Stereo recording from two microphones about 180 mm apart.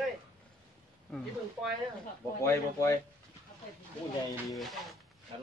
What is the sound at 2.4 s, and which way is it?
Speech, 15° left (ahead or behind).